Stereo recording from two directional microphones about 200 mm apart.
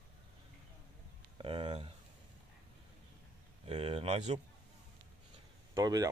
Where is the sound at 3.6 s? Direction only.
30° right (ahead or behind).